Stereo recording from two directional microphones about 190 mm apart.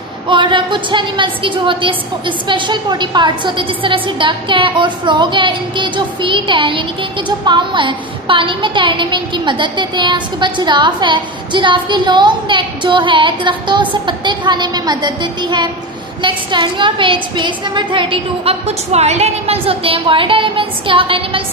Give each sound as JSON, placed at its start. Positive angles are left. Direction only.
{"t": 0.3, "sound": "a woman's voice", "side_deg": -25}